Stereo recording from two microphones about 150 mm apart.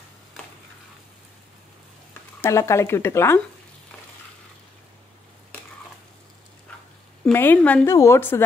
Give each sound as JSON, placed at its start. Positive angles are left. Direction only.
{"t": 2.4, "sound": "a woman's voice", "side_deg": 20}
{"t": 7.3, "sound": "a woman's voice", "side_deg": 10}